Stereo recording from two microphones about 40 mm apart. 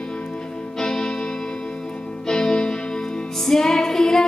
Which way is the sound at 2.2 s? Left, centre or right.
Centre.